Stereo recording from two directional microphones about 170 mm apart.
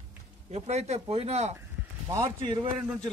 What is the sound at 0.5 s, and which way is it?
Speech, 40° right (ahead or behind).